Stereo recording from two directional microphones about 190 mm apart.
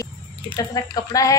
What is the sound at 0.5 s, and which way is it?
Speech, 20° left (ahead or behind).